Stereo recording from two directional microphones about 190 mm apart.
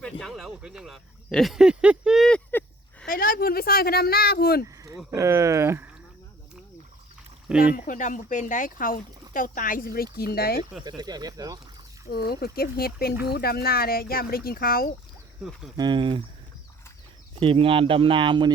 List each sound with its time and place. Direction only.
0.0 s a sound: centre (ahead or behind)
3.1 s a sound: 50° left (ahead or behind)
5.1 s speech: 15° right (ahead or behind)
7.4 s speech: 5° right (ahead or behind)
7.8 s speech: 40° left (ahead or behind)
10.8 s speech: 20° right (ahead or behind)
12.1 s speech: 55° left (ahead or behind)
15.8 s speech: 25° right (ahead or behind)
17.4 s speech: 30° right (ahead or behind)